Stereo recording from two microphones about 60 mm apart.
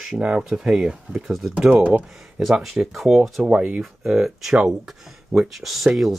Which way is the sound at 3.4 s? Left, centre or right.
Centre.